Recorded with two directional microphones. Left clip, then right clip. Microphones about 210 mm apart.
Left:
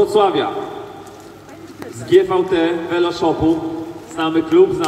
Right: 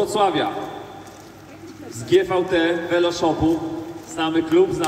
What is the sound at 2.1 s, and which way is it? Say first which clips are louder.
A man's voice: left 4 dB; 25° right (ahead or behind).